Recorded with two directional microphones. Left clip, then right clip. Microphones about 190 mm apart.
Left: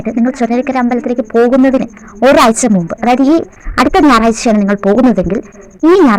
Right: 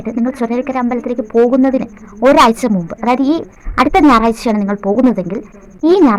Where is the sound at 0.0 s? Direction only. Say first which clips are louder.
Left 4 dB; 20° left (ahead or behind).